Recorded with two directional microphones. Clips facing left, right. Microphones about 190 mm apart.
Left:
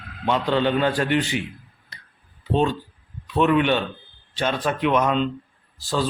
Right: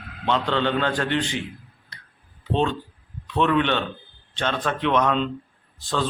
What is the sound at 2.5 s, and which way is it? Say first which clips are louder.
A man's voice: left 2 dB; 10° left (ahead or behind).